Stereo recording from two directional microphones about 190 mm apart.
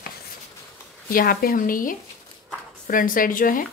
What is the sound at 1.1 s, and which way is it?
Speech, 50° left (ahead or behind).